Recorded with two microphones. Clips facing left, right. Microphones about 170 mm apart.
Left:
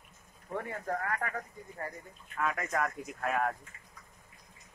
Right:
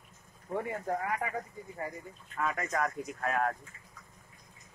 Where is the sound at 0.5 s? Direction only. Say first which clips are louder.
Right 2 dB; 15° right (ahead or behind).